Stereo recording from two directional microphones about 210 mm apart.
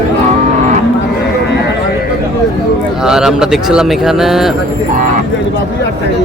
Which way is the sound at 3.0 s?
Centre (ahead or behind).